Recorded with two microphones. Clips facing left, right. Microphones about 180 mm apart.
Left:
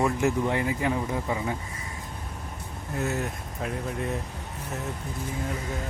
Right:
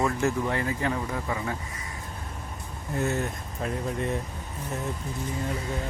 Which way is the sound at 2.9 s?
5° left (ahead or behind).